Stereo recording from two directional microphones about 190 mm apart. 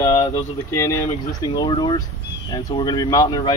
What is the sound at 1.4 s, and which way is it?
Speech, 20° left (ahead or behind).